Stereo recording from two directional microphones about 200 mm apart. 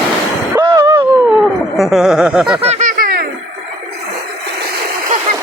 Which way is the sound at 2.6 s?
35° right (ahead or behind).